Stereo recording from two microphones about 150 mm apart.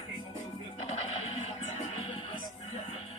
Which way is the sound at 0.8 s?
45° left (ahead or behind).